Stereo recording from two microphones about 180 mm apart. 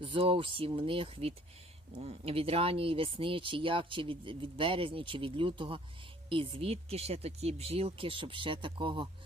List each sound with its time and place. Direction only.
0.0 s speech: 30° right (ahead or behind)